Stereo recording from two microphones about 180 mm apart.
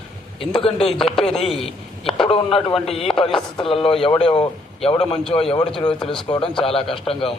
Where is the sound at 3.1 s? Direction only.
30° left (ahead or behind).